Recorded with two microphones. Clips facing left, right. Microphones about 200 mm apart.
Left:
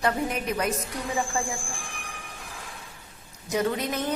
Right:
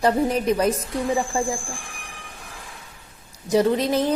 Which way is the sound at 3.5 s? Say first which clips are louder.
Right 7 dB; 30° right (ahead or behind).